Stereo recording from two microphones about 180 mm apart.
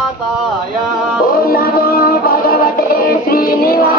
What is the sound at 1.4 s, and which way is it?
Music, 55° left (ahead or behind).